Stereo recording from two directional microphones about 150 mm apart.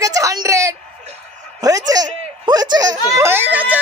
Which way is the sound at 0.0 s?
20° right (ahead or behind).